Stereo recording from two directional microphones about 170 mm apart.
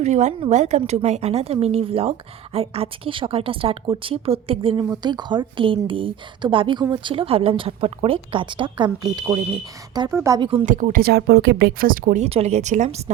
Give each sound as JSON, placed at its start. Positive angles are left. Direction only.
{"t": 0.0, "sound": "a woman's voice", "side_deg": -45}
{"t": 10.7, "sound": "speech", "side_deg": -50}
{"t": 12.2, "sound": "speech", "side_deg": -40}